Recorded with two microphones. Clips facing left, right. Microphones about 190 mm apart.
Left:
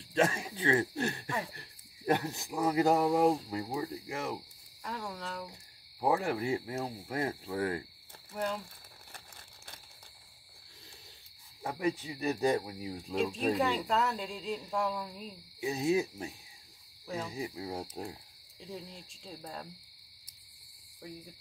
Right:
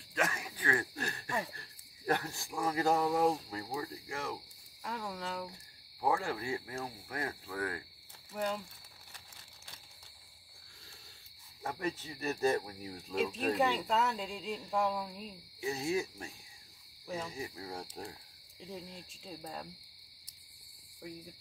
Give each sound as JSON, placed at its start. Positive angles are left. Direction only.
{"t": 0.1, "sound": "speech", "side_deg": 30}
{"t": 4.8, "sound": "speech", "side_deg": 0}
{"t": 5.5, "sound": "speech", "side_deg": 20}
{"t": 11.6, "sound": "speech", "side_deg": 15}
{"t": 13.1, "sound": "speech", "side_deg": 0}
{"t": 15.6, "sound": "speech", "side_deg": 15}
{"t": 18.6, "sound": "speech", "side_deg": 0}